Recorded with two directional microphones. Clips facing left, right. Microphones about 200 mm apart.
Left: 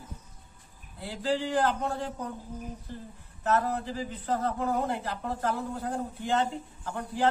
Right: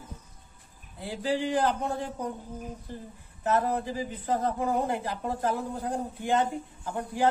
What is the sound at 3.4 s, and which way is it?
A man's voice, 15° right (ahead or behind).